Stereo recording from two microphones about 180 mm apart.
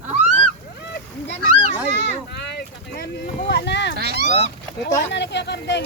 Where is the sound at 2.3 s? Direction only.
70° left (ahead or behind).